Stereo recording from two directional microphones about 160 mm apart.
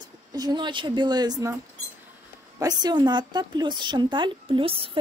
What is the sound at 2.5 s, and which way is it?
A woman's voice, 25° right (ahead or behind).